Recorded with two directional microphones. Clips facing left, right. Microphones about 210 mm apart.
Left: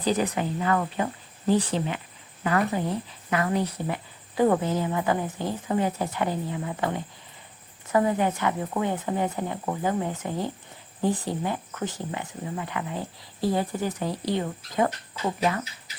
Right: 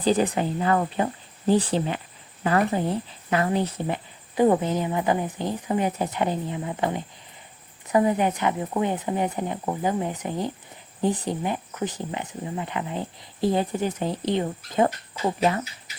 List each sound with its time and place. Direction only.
0.0 s speech: 30° right (ahead or behind)